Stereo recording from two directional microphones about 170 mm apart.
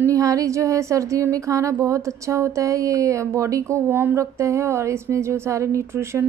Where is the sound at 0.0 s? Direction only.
20° right (ahead or behind).